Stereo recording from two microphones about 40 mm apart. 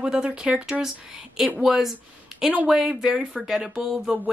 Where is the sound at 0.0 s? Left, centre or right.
Right.